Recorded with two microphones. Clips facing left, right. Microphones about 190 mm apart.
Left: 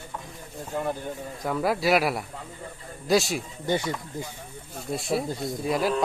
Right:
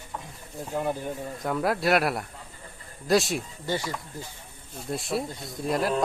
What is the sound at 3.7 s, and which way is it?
Speech, 20° left (ahead or behind).